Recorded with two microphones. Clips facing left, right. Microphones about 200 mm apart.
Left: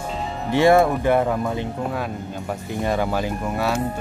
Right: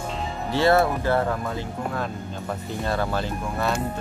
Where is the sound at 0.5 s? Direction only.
15° left (ahead or behind).